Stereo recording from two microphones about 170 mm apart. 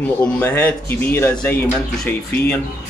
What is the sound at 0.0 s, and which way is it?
Speech, 10° left (ahead or behind).